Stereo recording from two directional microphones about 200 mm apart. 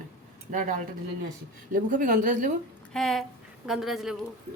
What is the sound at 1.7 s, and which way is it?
Speech, 40° right (ahead or behind).